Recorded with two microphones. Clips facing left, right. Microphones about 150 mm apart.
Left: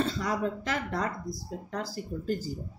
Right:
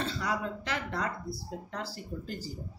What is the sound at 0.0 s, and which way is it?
Speech, 40° left (ahead or behind).